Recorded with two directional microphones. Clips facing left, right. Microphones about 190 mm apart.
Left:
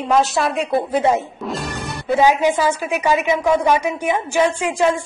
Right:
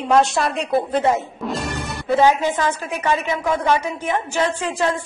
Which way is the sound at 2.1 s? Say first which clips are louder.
Left 1 dB; 10° left (ahead or behind).